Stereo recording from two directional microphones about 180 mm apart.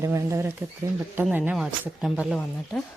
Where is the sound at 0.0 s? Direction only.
15° right (ahead or behind).